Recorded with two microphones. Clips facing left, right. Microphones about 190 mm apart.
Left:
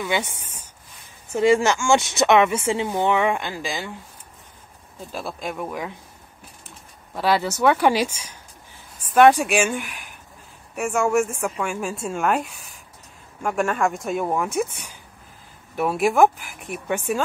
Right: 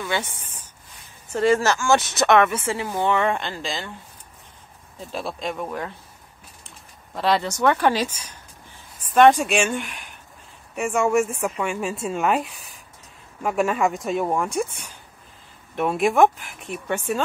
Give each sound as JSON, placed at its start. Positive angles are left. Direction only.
{"t": 0.0, "sound": "speech", "side_deg": 15}
{"t": 5.1, "sound": "speech", "side_deg": 5}
{"t": 7.2, "sound": "speech", "side_deg": 5}
{"t": 15.7, "sound": "speech", "side_deg": 5}